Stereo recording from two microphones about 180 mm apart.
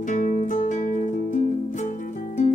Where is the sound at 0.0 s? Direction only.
45° left (ahead or behind).